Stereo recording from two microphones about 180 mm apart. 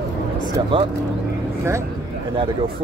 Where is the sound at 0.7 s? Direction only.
30° right (ahead or behind).